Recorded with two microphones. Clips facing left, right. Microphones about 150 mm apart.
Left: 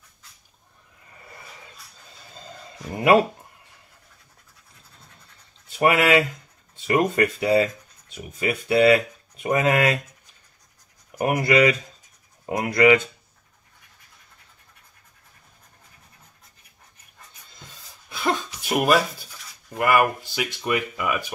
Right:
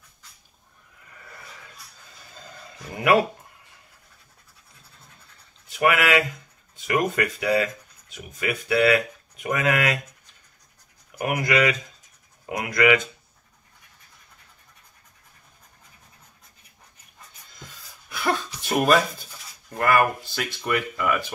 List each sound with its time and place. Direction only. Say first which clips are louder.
2.9 s speech: left 3 dB; 30° left (ahead or behind)
5.7 s speech: left 2 dB; 30° left (ahead or behind)
11.1 s speech: left 4 dB; 35° left (ahead or behind)
18.1 s a sound: left 1 dB; 20° left (ahead or behind)
19.7 s speech: left 1 dB; 10° left (ahead or behind)